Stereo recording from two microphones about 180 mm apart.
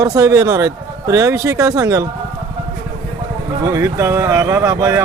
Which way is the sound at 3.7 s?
15° right (ahead or behind).